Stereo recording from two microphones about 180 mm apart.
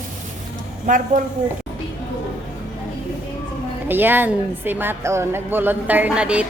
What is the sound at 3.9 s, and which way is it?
A woman's voice, 10° right (ahead or behind).